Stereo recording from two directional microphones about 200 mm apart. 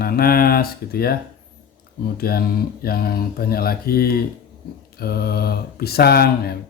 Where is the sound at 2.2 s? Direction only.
50° left (ahead or behind).